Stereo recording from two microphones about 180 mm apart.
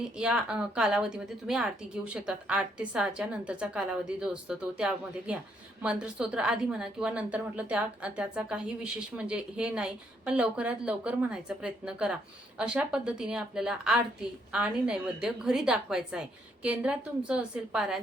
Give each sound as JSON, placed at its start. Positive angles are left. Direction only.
{"t": 0.2, "sound": "a woman's voice", "side_deg": -5}